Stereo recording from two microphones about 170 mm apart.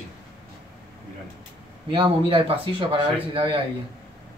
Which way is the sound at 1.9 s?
30° right (ahead or behind).